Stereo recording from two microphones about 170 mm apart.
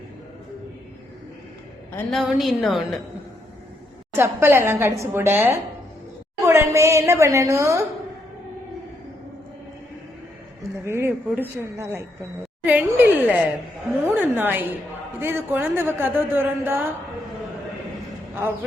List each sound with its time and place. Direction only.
2.0 s a woman's voice: centre (ahead or behind)
4.1 s a woman's voice: 15° right (ahead or behind)
10.8 s a woman's voice: 15° right (ahead or behind)